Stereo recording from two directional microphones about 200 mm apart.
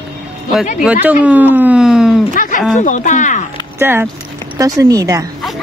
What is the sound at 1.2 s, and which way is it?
Speech, 10° right (ahead or behind).